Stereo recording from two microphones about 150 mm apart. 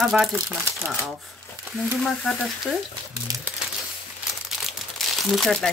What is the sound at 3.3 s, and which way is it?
Speech, 20° right (ahead or behind).